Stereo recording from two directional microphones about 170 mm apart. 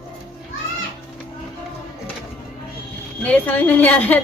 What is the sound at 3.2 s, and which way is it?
A woman's voice, 10° left (ahead or behind).